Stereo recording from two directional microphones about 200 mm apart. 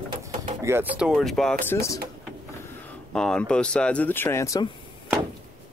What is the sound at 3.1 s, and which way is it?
Speech, 5° left (ahead or behind).